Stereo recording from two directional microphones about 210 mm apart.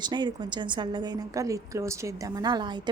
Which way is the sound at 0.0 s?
20° right (ahead or behind).